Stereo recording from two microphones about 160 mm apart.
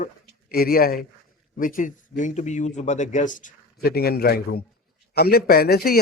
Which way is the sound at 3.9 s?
75° left (ahead or behind).